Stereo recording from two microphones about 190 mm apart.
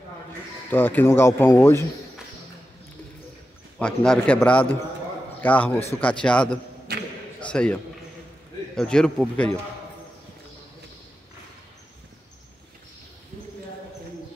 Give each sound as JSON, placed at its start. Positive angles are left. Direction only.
{"t": 0.7, "sound": "speech", "side_deg": 10}
{"t": 3.8, "sound": "a man's voice", "side_deg": 5}
{"t": 6.9, "sound": "a sound", "side_deg": -55}
{"t": 7.4, "sound": "a man's voice", "side_deg": 5}